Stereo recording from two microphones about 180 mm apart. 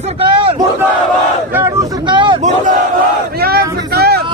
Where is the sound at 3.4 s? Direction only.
60° right (ahead or behind).